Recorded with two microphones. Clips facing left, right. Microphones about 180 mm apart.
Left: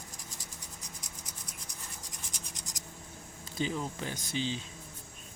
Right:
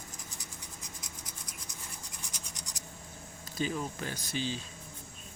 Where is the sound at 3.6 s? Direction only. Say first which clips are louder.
Even; 20° left (ahead or behind).